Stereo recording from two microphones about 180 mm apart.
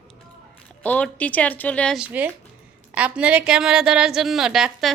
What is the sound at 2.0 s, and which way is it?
A woman's voice, 10° right (ahead or behind).